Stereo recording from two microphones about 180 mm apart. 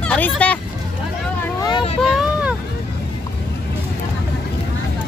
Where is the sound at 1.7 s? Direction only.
30° left (ahead or behind).